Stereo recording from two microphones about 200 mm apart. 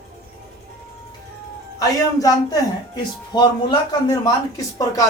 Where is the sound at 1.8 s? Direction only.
15° left (ahead or behind).